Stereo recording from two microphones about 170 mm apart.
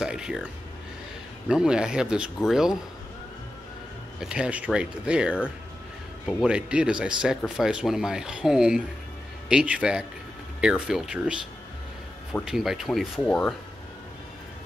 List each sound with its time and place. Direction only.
0.0 s speech: 5° right (ahead or behind)
1.5 s speech: 5° right (ahead or behind)
4.2 s speech: 5° right (ahead or behind)
12.4 s speech: 5° right (ahead or behind)